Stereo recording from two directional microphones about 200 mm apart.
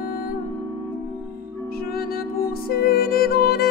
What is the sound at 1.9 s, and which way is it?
Music, 50° left (ahead or behind).